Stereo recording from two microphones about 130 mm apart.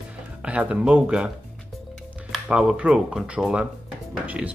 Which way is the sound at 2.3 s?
5° right (ahead or behind).